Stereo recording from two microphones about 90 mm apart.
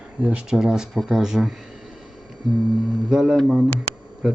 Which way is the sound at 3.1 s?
5° right (ahead or behind).